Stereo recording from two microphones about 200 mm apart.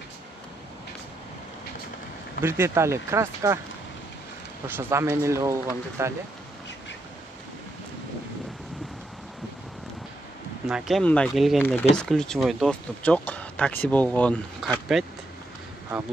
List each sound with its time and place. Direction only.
2.4 s speech: 10° right (ahead or behind)
4.6 s speech: 10° right (ahead or behind)
10.7 s speech: centre (ahead or behind)